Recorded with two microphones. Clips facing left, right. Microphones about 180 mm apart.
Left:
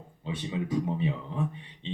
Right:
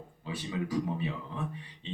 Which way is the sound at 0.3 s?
25° left (ahead or behind).